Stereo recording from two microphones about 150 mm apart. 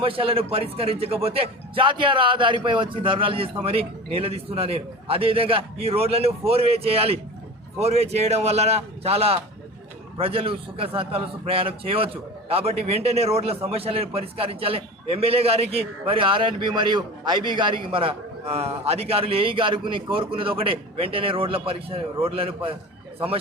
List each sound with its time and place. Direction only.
0.0 s a man's voice: 35° right (ahead or behind)